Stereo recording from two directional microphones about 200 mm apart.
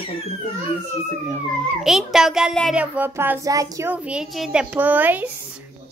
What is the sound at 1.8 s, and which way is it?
A child's voice, centre (ahead or behind).